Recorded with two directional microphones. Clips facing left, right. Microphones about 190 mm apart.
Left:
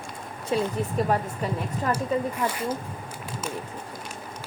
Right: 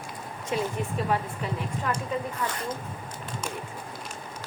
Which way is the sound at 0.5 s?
35° left (ahead or behind).